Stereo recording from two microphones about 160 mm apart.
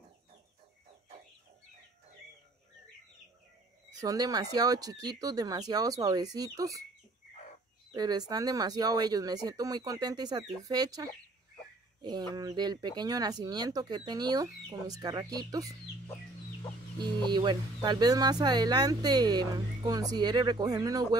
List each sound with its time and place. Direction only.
4.0 s speech: 25° right (ahead or behind)
7.9 s speech: 25° right (ahead or behind)
12.0 s a sound: 25° right (ahead or behind)
12.4 s speech: 25° right (ahead or behind)
17.0 s speech: 25° right (ahead or behind)